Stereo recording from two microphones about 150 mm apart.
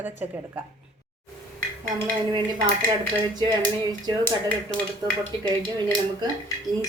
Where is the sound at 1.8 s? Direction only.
30° right (ahead or behind).